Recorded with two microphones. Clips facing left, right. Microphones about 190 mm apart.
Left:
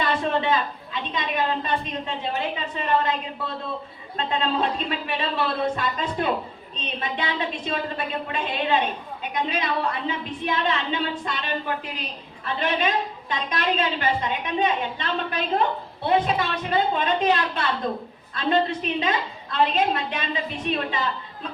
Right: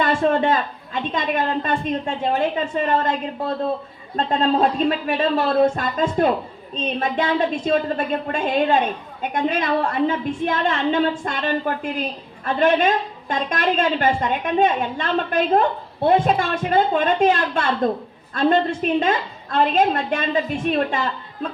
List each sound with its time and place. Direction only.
0.0 s a woman's voice: 50° right (ahead or behind)